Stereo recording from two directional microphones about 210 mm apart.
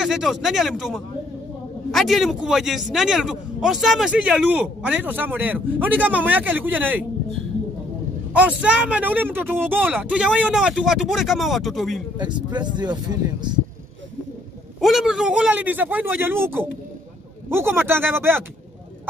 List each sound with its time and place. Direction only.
0.0 s a man's voice: centre (ahead or behind)
8.3 s a man's voice: 5° right (ahead or behind)
12.2 s speech: 20° right (ahead or behind)
14.8 s a man's voice: centre (ahead or behind)